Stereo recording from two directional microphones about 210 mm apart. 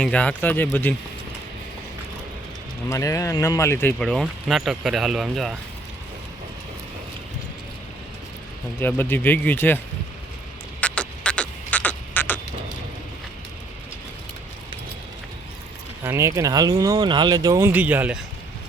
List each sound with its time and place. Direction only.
0.0 s speech: 5° left (ahead or behind)
2.9 s speech: 15° left (ahead or behind); by 5.5 s centre (ahead or behind)
8.8 s speech: 10° left (ahead or behind)
10.8 s frog: 5° left (ahead or behind)
16.0 s speech: 15° right (ahead or behind)